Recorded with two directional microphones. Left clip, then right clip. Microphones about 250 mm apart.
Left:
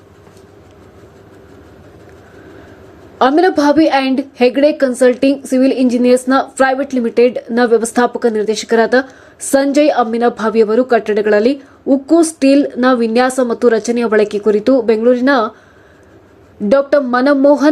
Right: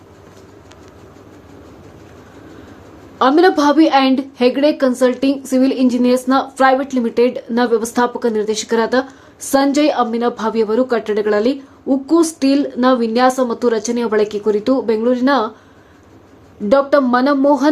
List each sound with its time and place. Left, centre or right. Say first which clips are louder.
3.2 s a woman's voice: left 1 dB; centre
16.6 s a woman's voice: left 1 dB; centre